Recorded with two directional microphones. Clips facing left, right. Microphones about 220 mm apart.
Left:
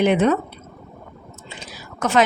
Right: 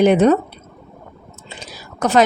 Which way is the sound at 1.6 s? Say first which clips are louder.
Right 4 dB; 35° right (ahead or behind).